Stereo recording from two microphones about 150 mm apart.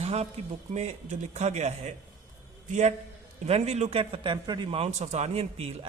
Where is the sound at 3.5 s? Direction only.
45° right (ahead or behind).